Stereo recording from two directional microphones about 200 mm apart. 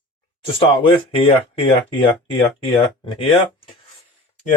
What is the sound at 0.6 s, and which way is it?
Speech, 25° left (ahead or behind).